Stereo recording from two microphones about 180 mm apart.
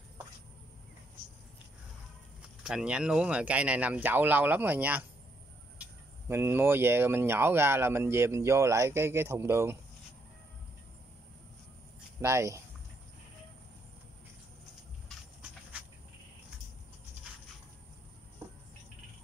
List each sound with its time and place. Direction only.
2.6 s speech: 5° right (ahead or behind)
12.2 s speech: 15° right (ahead or behind)